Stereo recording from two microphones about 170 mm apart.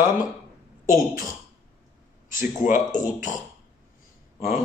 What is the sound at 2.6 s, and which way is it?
Speech, 50° left (ahead or behind).